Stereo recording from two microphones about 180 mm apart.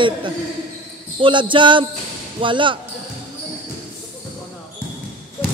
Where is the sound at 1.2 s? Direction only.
25° right (ahead or behind).